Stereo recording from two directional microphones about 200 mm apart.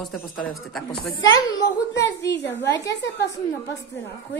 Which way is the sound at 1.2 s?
80° left.